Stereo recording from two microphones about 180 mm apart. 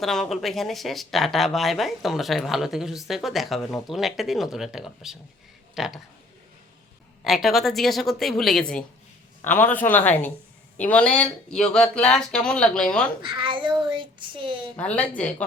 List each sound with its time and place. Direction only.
0.0 s speech: centre (ahead or behind)
7.3 s a man's voice: centre (ahead or behind)
13.2 s speech: 30° right (ahead or behind)
14.8 s a man's voice: 5° left (ahead or behind)